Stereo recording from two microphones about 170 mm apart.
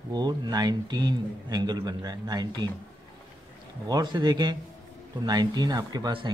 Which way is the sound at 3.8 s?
25° right (ahead or behind).